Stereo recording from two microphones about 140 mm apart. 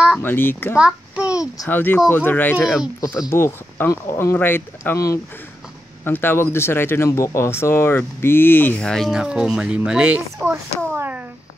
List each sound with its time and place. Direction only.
0.2 s speech: 15° left (ahead or behind)
0.7 s a child's voice: 10° right (ahead or behind)
1.7 s speech: 15° left (ahead or behind)
2.5 s speech: 5° right (ahead or behind)
3.3 s speech: 20° left (ahead or behind); by 10.6 s 10° right (ahead or behind)
11.0 s a sound: 15° right (ahead or behind)